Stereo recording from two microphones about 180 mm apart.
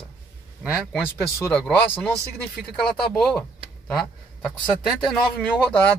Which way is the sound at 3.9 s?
Centre (ahead or behind).